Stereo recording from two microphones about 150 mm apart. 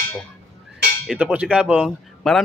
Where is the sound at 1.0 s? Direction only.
10° right (ahead or behind).